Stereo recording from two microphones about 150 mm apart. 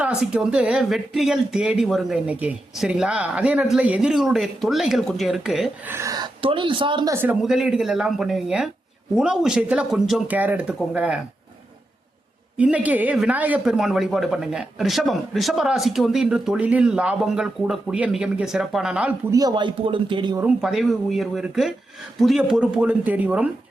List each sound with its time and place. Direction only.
0.0 s speech: 5° right (ahead or behind)
5.9 s speech: 20° right (ahead or behind)
7.1 s speech: 15° right (ahead or behind)
7.4 s speech: 5° right (ahead or behind)
12.5 s speech: 10° right (ahead or behind)
19.3 s a man's voice: 25° right (ahead or behind)
20.4 s speech: 5° right (ahead or behind)